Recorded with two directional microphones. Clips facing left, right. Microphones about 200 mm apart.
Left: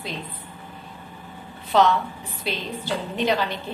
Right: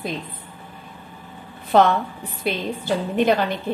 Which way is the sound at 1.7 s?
55° right (ahead or behind).